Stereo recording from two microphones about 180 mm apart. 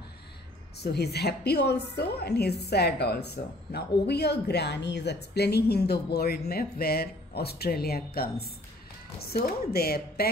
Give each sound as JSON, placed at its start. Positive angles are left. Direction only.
{"t": 0.7, "sound": "a woman's voice", "side_deg": 65}